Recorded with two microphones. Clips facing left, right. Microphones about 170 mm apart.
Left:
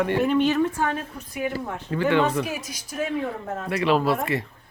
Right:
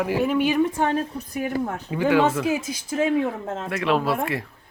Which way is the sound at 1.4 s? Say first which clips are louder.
Right 3 dB; 45° right (ahead or behind).